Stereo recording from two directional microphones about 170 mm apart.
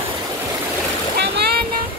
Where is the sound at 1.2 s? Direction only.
70° right (ahead or behind).